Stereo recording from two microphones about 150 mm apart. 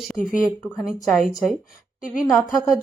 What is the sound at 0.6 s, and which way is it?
Speech, 10° left (ahead or behind).